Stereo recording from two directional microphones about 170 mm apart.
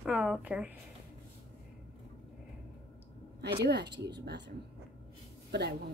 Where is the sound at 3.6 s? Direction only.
80° right.